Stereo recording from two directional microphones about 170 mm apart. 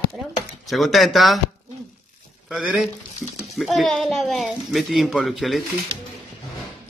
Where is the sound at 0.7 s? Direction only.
Centre (ahead or behind).